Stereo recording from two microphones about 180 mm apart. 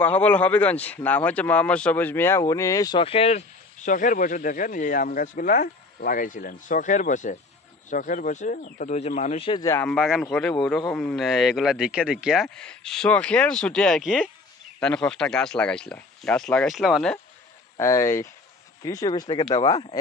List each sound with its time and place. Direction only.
0.0 s speech: 10° left (ahead or behind); by 9.6 s 35° left (ahead or behind)
9.6 s speech: 15° left (ahead or behind)
9.8 s speech: 5° right (ahead or behind)
17.7 s speech: 15° left (ahead or behind)